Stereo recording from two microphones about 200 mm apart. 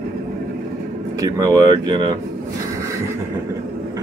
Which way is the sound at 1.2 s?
20° right (ahead or behind).